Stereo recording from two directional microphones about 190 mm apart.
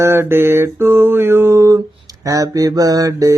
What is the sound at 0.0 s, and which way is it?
Mantra, 15° right (ahead or behind).